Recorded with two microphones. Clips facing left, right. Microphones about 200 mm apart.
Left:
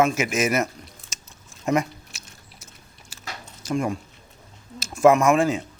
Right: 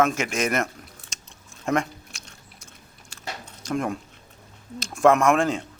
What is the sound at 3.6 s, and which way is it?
Speech, centre (ahead or behind).